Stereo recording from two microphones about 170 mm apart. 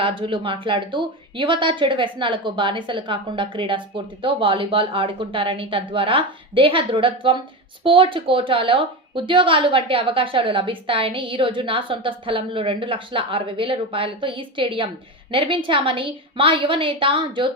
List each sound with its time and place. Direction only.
0.0 s a woman's voice: 30° right (ahead or behind)